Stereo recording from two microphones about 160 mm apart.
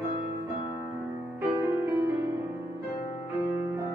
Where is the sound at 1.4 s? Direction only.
10° right (ahead or behind).